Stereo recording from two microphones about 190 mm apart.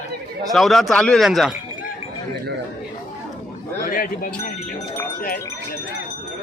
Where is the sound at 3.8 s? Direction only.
45° left (ahead or behind).